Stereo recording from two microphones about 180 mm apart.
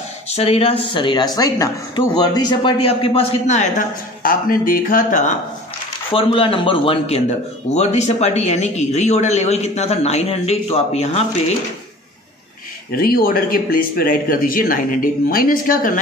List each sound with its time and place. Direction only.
0.3 s speech: 35° left (ahead or behind)
6.1 s a man's voice: 30° left (ahead or behind)
12.9 s speech: 55° left (ahead or behind)